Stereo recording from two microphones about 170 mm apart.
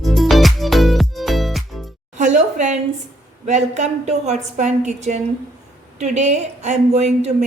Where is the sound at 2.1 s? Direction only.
45° right (ahead or behind).